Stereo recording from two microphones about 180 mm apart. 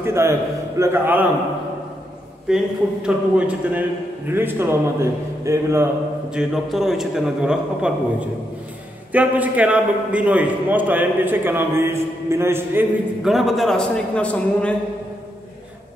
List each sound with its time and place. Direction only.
0.0 s a man's voice: 15° right (ahead or behind)
2.4 s a man's voice: 5° right (ahead or behind)
6.3 s a man's voice: centre (ahead or behind)
13.2 s a man's voice: centre (ahead or behind)